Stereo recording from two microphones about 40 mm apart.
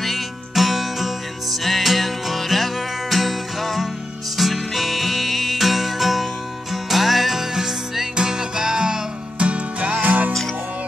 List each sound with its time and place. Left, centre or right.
0.0 s music: centre
9.4 s music: right